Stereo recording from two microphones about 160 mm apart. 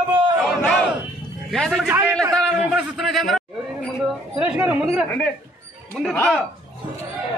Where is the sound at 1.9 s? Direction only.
20° right (ahead or behind).